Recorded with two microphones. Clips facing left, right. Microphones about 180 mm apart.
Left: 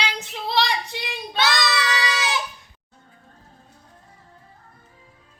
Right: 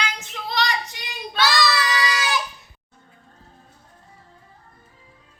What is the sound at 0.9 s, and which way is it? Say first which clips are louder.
Child singing: even; 25° left (ahead or behind).